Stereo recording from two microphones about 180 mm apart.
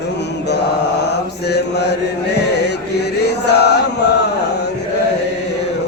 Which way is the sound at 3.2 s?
65° left (ahead or behind).